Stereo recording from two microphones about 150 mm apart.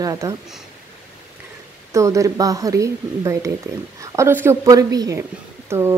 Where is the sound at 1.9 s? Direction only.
20° right (ahead or behind).